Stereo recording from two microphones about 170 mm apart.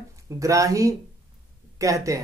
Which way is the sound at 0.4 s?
20° right (ahead or behind).